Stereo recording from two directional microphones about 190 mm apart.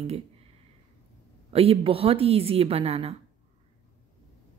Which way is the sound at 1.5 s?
30° right (ahead or behind).